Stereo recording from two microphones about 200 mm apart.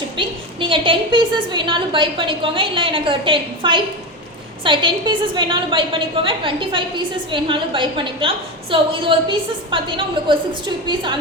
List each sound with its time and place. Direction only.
0.2 s a woman's voice: 25° right (ahead or behind)
10.8 s a woman's voice: 25° right (ahead or behind)